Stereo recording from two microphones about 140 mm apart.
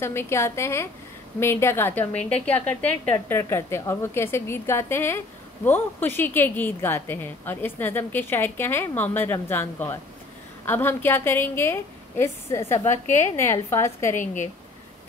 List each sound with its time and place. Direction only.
0.0 s a woman's voice: 20° left (ahead or behind)